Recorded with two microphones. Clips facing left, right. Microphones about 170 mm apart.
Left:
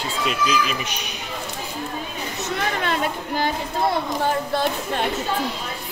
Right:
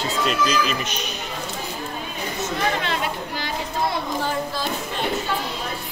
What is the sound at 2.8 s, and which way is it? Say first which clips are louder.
Chatter: left 2 dB; 50° left (ahead or behind).